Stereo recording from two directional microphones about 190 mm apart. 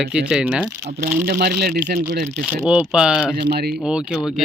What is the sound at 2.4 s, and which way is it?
A man's voice, 5° right (ahead or behind).